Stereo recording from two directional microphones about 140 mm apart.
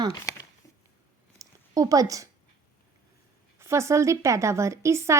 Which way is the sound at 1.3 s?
25° right (ahead or behind).